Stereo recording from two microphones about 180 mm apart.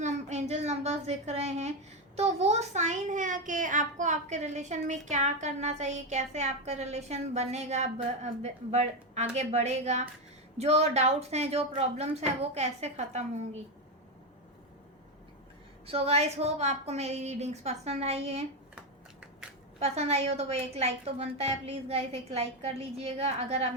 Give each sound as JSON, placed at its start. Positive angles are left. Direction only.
{"t": 0.0, "sound": "a woman's voice", "side_deg": -40}
{"t": 15.9, "sound": "a child's voice", "side_deg": -35}
{"t": 19.8, "sound": "a child's voice", "side_deg": -35}